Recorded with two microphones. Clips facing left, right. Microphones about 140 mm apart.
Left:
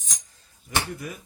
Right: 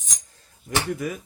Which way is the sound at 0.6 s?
90° right.